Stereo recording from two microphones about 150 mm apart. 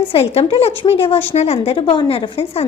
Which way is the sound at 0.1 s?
40° left (ahead or behind).